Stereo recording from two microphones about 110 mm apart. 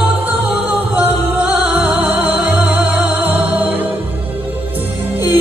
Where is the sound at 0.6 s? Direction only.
15° right (ahead or behind).